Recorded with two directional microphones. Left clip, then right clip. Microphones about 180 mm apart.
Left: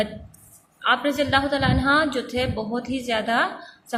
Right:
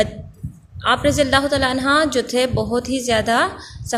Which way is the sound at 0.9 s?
50° right (ahead or behind).